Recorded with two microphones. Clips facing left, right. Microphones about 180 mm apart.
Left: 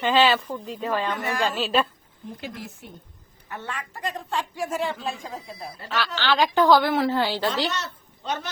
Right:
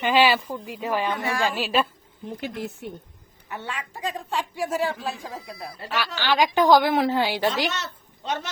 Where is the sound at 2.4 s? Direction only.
65° right (ahead or behind).